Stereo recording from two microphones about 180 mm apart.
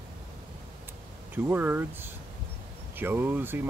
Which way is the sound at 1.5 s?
10° right (ahead or behind).